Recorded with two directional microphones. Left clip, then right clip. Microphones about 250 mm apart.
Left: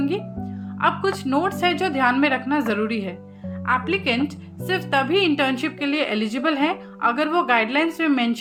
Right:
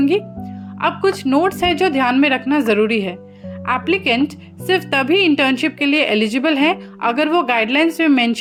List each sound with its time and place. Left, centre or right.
0.8 s a woman's voice: right